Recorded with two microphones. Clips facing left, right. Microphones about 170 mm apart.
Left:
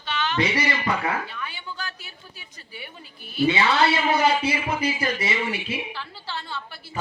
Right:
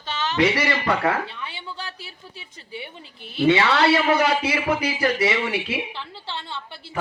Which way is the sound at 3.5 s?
75° right (ahead or behind).